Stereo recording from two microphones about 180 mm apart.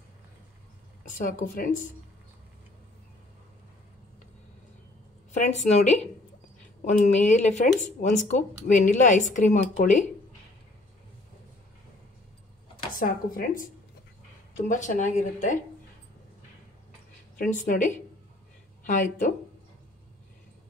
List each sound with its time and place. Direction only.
1.1 s speech: 45° left (ahead or behind)
5.3 s a woman's voice: 40° left (ahead or behind)
12.9 s speech: 50° left (ahead or behind)
14.7 s speech: 45° left (ahead or behind)
17.4 s speech: 45° left (ahead or behind)